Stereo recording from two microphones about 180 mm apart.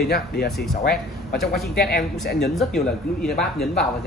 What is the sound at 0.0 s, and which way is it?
Speech, 60° left (ahead or behind).